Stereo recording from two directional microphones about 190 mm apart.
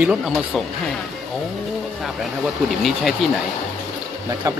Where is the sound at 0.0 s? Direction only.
5° right (ahead or behind).